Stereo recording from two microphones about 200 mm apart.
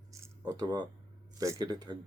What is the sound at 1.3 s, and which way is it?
Speech, 20° right (ahead or behind).